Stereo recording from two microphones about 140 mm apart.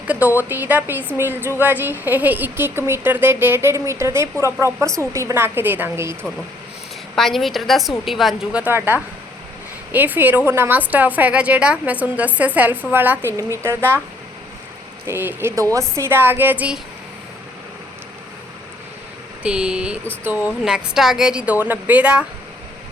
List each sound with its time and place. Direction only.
0.1 s a woman's voice: 10° right (ahead or behind)
7.2 s a woman's voice: centre (ahead or behind)
8.6 s a woman's voice: 15° right (ahead or behind)
15.0 s a woman's voice: 15° right (ahead or behind)
19.4 s a woman's voice: 5° right (ahead or behind)